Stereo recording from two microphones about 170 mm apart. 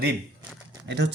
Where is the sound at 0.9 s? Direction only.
90° right.